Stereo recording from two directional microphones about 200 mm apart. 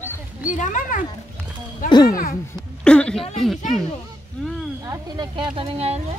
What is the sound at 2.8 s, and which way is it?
Speech, 5° left (ahead or behind).